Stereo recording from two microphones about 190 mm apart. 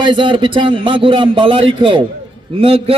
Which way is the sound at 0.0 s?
25° right (ahead or behind).